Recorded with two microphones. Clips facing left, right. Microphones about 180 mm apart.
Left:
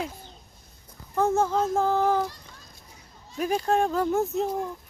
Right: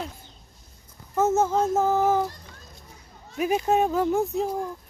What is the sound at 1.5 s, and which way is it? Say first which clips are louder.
Child singing: right 2 dB; 10° right (ahead or behind).